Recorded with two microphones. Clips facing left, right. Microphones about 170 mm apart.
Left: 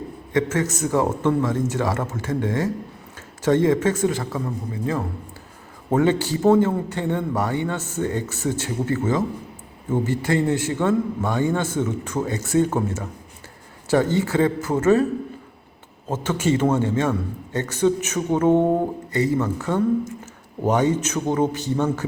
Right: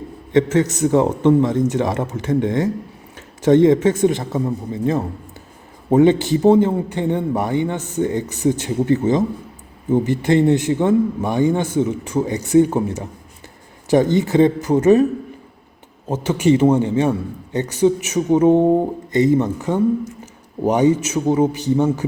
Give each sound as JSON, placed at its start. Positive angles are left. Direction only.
{"t": 0.3, "sound": "a man's voice", "side_deg": -20}
{"t": 16.0, "sound": "a man's voice", "side_deg": -15}